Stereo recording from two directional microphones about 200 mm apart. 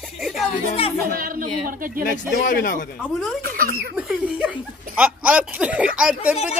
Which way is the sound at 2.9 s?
5° left (ahead or behind).